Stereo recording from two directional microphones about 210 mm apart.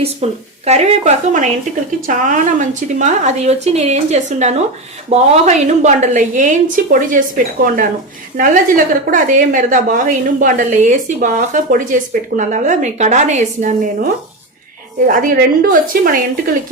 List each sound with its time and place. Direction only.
0.0 s a woman's voice: 30° right (ahead or behind)